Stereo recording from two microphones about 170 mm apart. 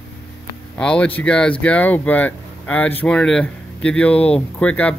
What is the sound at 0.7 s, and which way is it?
Speech, 5° left (ahead or behind).